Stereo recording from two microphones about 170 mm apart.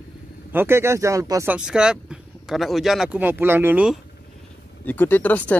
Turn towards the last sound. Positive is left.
turn(degrees=10)  # may be behind; listen again after turning